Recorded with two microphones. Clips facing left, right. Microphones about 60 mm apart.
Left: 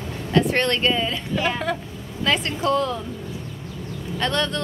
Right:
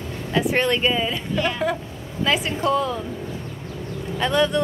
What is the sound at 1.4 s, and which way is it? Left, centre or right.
Speech, centre.